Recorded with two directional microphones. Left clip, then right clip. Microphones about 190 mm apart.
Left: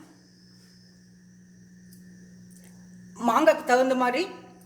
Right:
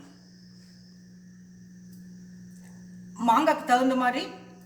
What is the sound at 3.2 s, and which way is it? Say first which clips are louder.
A woman's voice: left 1 dB; 45° left (ahead or behind).